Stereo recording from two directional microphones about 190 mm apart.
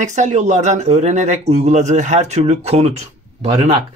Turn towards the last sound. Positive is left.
turn(degrees=-35)  # may be behind; listen again after turning